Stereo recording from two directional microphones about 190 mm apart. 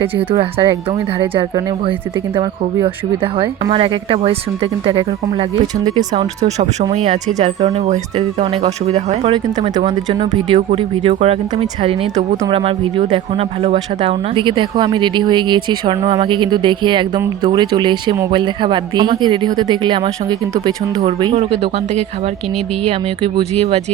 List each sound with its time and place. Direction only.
0.0 s speech: 30° right (ahead or behind)
6.4 s speech: 35° right (ahead or behind)